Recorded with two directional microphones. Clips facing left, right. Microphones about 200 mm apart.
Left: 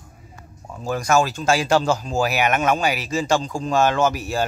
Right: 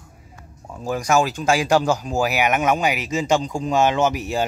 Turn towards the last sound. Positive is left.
turn(degrees=-20)  # may be behind; listen again after turning